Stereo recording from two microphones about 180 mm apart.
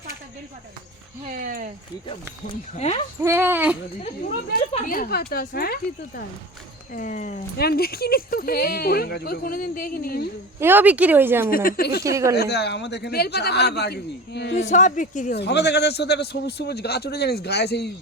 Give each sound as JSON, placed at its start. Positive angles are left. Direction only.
{"t": 1.3, "sound": "speech", "side_deg": -50}
{"t": 2.7, "sound": "speech", "side_deg": 35}
{"t": 3.2, "sound": "speech", "side_deg": -15}
{"t": 4.9, "sound": "speech", "side_deg": 55}
{"t": 6.9, "sound": "speech", "side_deg": 45}
{"t": 7.5, "sound": "speech", "side_deg": 60}
{"t": 10.6, "sound": "speech", "side_deg": -10}
{"t": 11.5, "sound": "speech", "side_deg": 55}
{"t": 12.0, "sound": "speech", "side_deg": -15}
{"t": 12.3, "sound": "a man's voice", "side_deg": 65}
{"t": 14.5, "sound": "speech", "side_deg": 40}
{"t": 15.4, "sound": "speech", "side_deg": 70}